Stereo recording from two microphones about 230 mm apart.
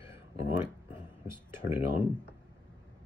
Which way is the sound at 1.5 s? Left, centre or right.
Centre.